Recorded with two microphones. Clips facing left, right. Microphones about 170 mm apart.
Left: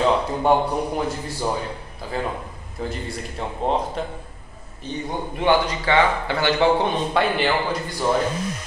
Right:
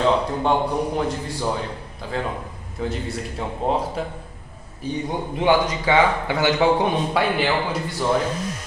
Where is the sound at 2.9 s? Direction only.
Centre (ahead or behind).